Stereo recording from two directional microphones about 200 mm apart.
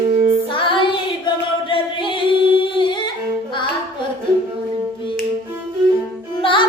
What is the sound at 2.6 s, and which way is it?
Singing, 25° left (ahead or behind).